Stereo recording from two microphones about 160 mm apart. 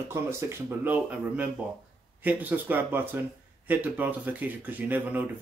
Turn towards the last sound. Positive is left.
turn(degrees=-10)  # may be behind; listen again after turning